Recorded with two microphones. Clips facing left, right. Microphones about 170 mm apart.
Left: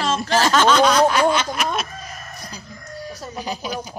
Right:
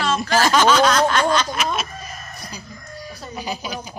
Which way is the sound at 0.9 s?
5° left (ahead or behind).